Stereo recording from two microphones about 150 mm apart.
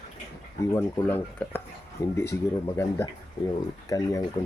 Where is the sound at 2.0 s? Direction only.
25° left (ahead or behind).